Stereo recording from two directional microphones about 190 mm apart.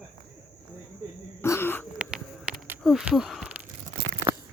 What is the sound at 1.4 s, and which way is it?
Wheeze, 15° left (ahead or behind).